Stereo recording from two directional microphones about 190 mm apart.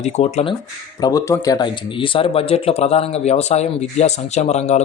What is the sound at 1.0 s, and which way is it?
A man's voice, 15° left (ahead or behind).